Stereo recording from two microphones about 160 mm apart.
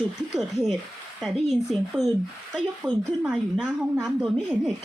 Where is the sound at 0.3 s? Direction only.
Centre (ahead or behind).